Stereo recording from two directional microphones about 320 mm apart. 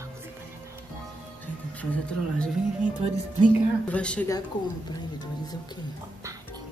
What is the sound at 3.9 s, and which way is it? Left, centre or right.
Speech, centre.